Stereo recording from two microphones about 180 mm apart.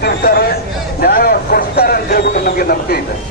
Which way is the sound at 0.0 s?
60° left (ahead or behind).